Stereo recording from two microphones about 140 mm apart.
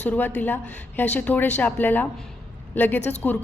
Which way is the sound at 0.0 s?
15° left (ahead or behind).